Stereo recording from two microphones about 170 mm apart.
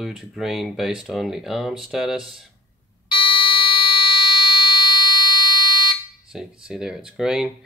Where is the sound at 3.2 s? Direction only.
30° left (ahead or behind).